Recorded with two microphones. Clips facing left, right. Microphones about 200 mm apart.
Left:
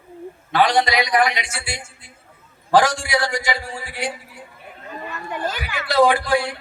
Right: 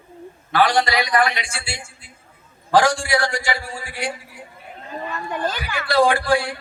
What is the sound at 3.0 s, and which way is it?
Speech, 20° left (ahead or behind).